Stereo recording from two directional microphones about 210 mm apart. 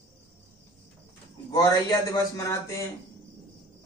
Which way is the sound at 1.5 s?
20° left (ahead or behind).